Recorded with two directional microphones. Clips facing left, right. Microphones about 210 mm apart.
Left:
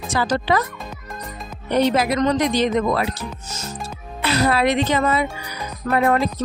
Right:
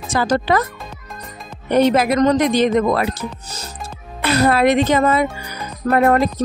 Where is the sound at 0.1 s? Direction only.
50° right (ahead or behind).